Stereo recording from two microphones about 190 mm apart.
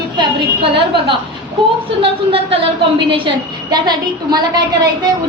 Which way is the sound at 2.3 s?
30° right (ahead or behind).